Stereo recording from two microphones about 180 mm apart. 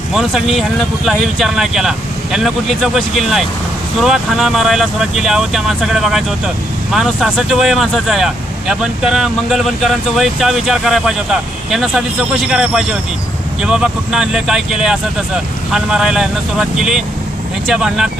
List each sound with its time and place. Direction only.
0.1 s speech: centre (ahead or behind)